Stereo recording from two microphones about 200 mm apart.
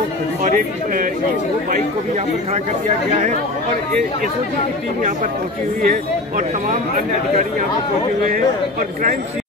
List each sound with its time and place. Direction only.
0.4 s speech: 40° right (ahead or behind)
5.8 s speech: 40° right (ahead or behind)